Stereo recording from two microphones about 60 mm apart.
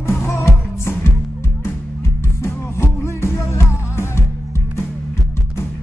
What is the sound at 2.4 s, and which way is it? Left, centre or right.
Music, left.